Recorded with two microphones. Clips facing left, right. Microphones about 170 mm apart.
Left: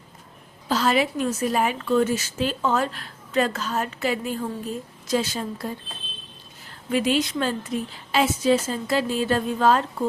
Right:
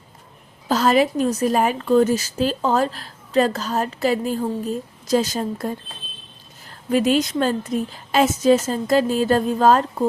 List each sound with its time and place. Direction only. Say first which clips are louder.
0.7 s a woman's voice: right 4 dB; 40° right (ahead or behind)
6.9 s a woman's voice: right 4 dB; 45° right (ahead or behind)